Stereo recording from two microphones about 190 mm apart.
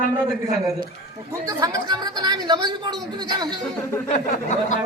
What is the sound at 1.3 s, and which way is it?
Speech, 20° right (ahead or behind).